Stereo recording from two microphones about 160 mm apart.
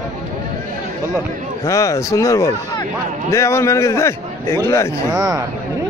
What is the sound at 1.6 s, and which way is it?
A man's voice, 20° left (ahead or behind).